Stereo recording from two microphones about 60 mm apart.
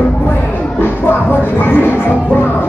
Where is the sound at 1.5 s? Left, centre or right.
Left.